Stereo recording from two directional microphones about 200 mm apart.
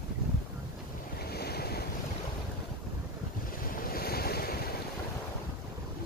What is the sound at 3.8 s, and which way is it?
Waves, 50° left (ahead or behind).